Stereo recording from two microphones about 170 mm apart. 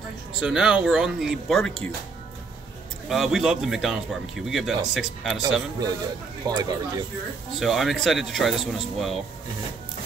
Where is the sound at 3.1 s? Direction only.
Centre (ahead or behind).